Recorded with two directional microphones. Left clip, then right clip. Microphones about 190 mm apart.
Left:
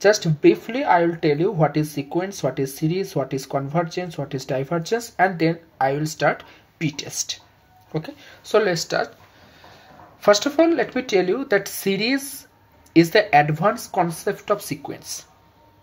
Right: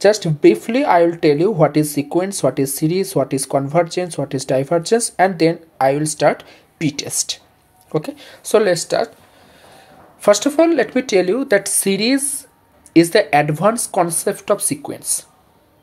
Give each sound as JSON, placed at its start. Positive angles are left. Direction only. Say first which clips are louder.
{"t": 0.0, "sound": "speech", "louder": "right 4 dB", "side_deg": -30}